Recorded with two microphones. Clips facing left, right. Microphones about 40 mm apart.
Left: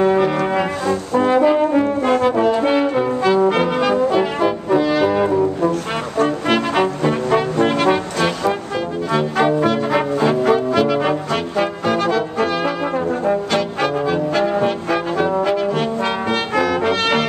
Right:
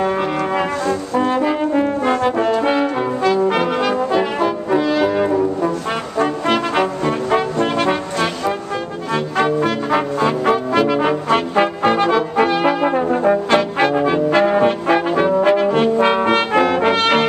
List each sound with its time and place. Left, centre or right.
0.0 s brass instrument: centre
7.2 s trombone: centre
11.9 s brass instrument: right